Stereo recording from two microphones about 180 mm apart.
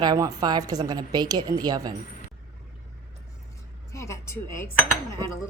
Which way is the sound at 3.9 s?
15° left (ahead or behind).